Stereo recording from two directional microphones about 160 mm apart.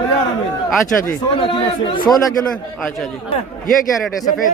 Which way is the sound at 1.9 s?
25° left (ahead or behind).